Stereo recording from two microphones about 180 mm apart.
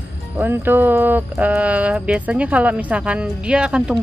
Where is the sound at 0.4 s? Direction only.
10° right (ahead or behind).